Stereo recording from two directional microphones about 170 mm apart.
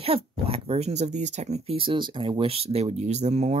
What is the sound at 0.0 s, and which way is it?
Speech, 35° right (ahead or behind).